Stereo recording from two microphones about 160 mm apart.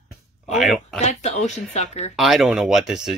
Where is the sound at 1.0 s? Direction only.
45° left (ahead or behind).